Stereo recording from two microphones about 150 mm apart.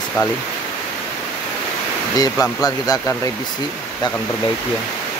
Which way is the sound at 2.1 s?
25° left (ahead or behind).